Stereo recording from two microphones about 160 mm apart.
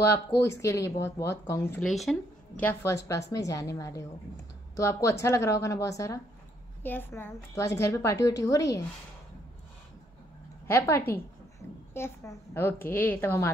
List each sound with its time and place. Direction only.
0.1 s a woman's voice: 15° left (ahead or behind)
1.8 s speech: centre (ahead or behind)
2.6 s a woman's voice: 15° left (ahead or behind)
10.7 s a woman's voice: 15° left (ahead or behind)